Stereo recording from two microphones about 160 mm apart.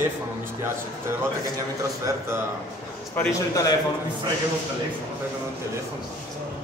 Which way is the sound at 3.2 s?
20° left (ahead or behind).